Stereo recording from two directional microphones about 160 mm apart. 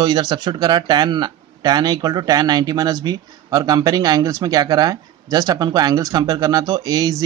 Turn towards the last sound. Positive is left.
turn(degrees=-25)  # may be behind; listen again after turning